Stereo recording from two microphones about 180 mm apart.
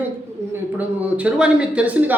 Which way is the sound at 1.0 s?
5° right (ahead or behind).